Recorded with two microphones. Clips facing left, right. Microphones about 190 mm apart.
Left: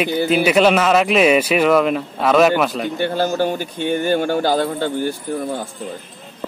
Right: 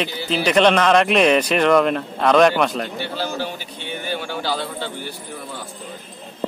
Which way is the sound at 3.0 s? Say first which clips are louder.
Left 7 dB; 50° left (ahead or behind).